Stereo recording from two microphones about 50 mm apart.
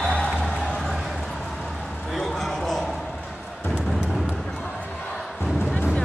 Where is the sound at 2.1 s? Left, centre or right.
Centre.